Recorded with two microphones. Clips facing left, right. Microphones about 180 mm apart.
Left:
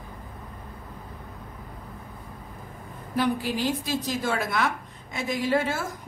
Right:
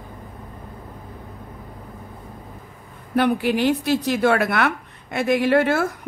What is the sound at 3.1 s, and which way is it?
A woman's voice, 65° right (ahead or behind).